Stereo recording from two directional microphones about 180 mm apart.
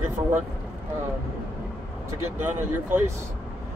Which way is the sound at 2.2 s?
10° right (ahead or behind).